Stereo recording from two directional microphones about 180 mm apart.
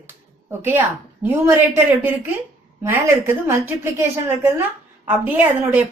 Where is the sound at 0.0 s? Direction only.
10° right (ahead or behind).